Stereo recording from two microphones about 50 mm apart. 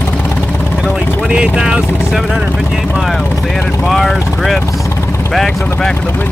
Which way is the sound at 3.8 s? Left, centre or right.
Centre.